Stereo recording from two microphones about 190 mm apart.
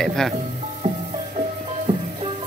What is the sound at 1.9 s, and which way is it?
Music, 30° right (ahead or behind).